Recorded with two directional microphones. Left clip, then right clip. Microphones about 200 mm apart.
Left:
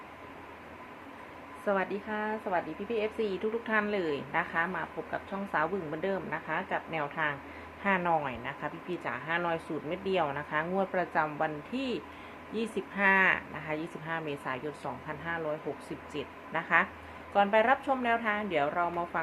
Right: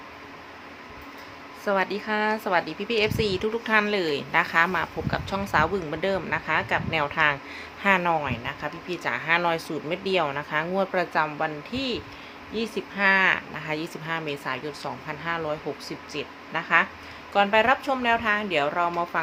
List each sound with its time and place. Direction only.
1.6 s speech: 20° right (ahead or behind)
2.0 s speech: 35° right (ahead or behind)